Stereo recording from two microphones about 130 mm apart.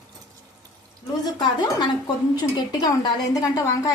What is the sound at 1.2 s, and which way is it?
A woman's voice, 35° left (ahead or behind).